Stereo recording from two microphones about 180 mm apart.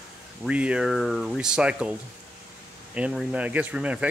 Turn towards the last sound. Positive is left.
turn(degrees=-5)  # may be behind; listen again after turning